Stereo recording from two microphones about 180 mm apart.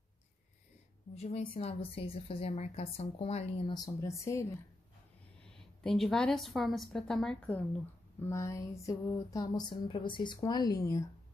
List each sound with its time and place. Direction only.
1.1 s a woman's voice: 35° left (ahead or behind); by 4.6 s 15° left (ahead or behind)
5.8 s a woman's voice: centre (ahead or behind)
8.3 s a sound: 15° left (ahead or behind)